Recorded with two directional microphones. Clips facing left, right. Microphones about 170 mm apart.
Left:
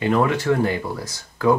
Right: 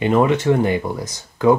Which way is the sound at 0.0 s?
20° right (ahead or behind).